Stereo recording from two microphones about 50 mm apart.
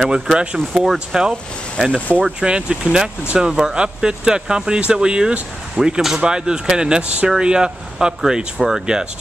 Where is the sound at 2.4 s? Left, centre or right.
Centre.